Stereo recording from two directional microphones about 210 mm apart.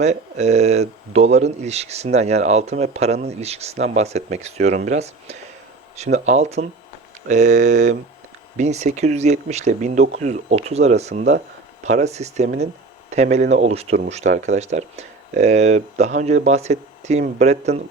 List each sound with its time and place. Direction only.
0.0 s speech: 30° right (ahead or behind)